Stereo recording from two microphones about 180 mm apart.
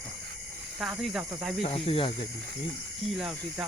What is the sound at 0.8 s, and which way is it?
Speech, centre (ahead or behind).